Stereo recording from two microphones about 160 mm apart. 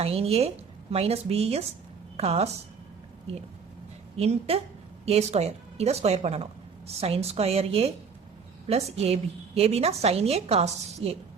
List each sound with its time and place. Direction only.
0.0 s a woman's voice: 40° right (ahead or behind)
4.2 s a woman's voice: 40° right (ahead or behind)